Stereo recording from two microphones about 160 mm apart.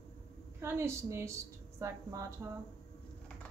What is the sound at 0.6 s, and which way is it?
A woman's voice, 15° right (ahead or behind).